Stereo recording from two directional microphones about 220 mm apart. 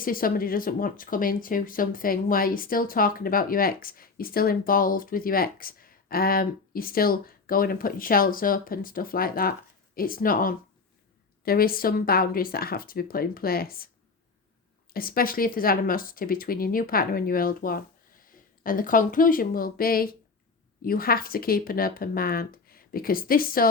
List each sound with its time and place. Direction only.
0.0 s speech: 40° left (ahead or behind)
14.9 s speech: 40° left (ahead or behind)